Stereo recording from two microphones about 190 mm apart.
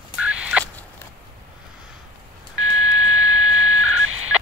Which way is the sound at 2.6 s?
90° right.